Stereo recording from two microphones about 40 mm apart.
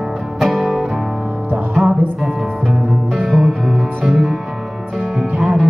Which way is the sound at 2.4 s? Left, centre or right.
Centre.